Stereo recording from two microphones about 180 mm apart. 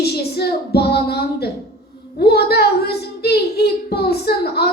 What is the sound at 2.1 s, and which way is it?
Child singing, 65° left (ahead or behind).